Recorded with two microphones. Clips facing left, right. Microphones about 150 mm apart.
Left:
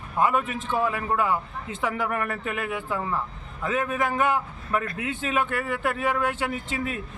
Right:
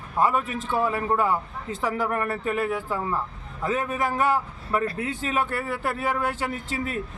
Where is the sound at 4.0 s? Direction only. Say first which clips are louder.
Right 1 dB; 35° right (ahead or behind).